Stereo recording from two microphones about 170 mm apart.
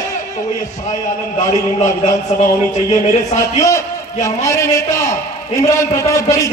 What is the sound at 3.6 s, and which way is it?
A man's voice, 20° left (ahead or behind).